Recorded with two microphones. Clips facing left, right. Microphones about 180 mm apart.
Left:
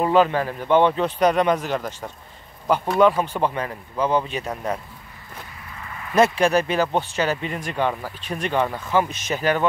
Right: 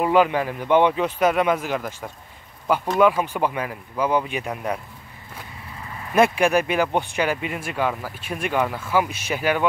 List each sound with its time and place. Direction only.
0.0 s speech: 15° right (ahead or behind)
6.1 s speech: 15° right (ahead or behind)